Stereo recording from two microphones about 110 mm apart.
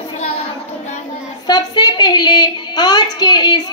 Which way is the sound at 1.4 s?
40° left (ahead or behind).